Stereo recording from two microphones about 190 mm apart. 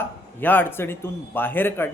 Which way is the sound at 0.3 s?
10° left (ahead or behind).